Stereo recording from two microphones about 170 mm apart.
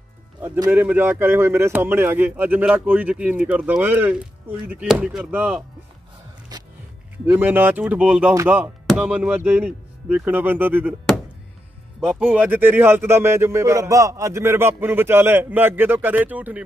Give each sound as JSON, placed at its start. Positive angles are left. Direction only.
{"t": 0.7, "sound": "speech", "side_deg": -10}
{"t": 6.5, "sound": "music", "side_deg": -25}
{"t": 7.2, "sound": "speech", "side_deg": -10}
{"t": 12.0, "sound": "speech", "side_deg": -5}